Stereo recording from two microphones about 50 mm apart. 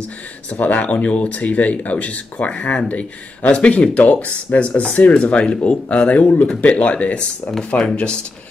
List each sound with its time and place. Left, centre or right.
0.5 s speech: left
5.2 s speech: left